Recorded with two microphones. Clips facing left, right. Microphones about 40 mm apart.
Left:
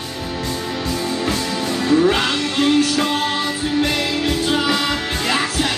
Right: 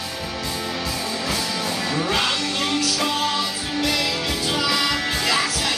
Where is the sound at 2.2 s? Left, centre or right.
Left.